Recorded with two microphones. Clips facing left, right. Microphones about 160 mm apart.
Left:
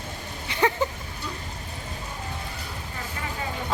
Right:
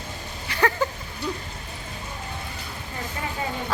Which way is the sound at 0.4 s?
20° left (ahead or behind).